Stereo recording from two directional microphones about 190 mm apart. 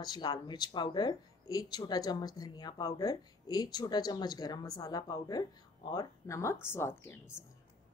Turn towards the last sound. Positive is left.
turn(degrees=15)  # may be behind; listen again after turning